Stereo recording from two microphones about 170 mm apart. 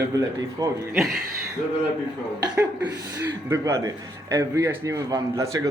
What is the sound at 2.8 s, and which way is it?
Speech, 15° right (ahead or behind).